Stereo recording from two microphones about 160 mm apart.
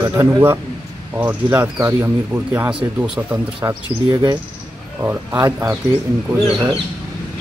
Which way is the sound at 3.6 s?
25° right (ahead or behind).